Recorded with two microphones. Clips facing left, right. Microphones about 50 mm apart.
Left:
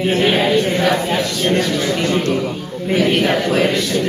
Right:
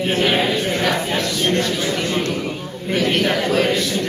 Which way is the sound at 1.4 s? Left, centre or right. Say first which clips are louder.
Left 3 dB; centre.